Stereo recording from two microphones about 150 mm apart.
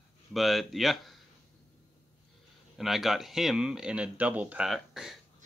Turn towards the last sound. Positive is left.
turn(degrees=0)  # may be behind; listen again after turning